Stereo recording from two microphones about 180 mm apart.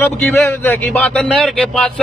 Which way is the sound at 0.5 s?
15° left (ahead or behind).